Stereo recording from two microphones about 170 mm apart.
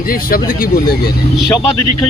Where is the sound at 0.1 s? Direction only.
60° left (ahead or behind).